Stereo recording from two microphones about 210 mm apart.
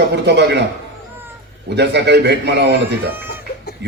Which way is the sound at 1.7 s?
55° right (ahead or behind).